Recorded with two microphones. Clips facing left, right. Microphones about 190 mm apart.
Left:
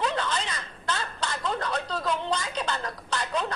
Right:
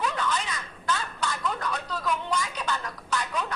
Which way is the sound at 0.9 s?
30° left (ahead or behind).